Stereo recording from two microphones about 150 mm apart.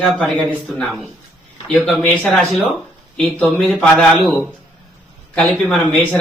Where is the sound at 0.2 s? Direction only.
5° left (ahead or behind).